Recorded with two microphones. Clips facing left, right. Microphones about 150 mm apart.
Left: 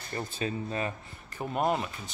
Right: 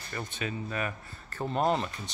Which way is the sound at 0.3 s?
30° left (ahead or behind).